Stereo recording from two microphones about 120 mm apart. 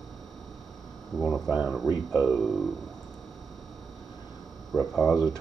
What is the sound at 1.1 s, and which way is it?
Speech, 5° left (ahead or behind).